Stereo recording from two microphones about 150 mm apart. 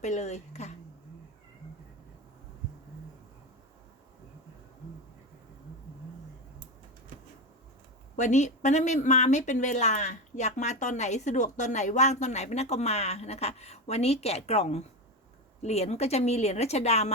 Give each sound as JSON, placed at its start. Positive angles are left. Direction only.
{"t": 0.0, "sound": "speech", "side_deg": 50}
{"t": 8.1, "sound": "speech", "side_deg": 55}